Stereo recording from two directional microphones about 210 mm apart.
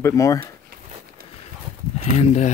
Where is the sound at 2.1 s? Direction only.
35° left (ahead or behind).